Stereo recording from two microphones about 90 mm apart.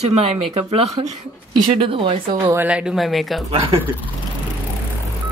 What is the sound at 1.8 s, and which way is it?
Speech, 80° right.